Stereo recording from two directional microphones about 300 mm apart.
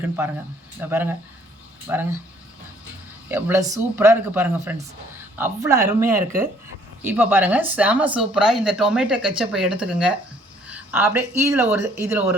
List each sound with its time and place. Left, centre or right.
0.8 s speech: centre
3.2 s speech: centre